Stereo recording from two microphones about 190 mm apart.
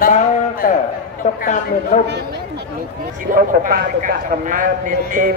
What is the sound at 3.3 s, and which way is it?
A man's voice, 50° right (ahead or behind).